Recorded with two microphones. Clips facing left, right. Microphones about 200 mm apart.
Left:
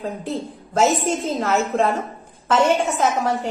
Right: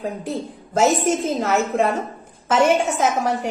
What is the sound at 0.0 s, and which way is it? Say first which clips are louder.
A woman's voice: even; centre (ahead or behind).